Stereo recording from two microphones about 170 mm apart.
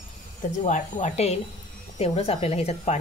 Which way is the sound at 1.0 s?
40° left (ahead or behind).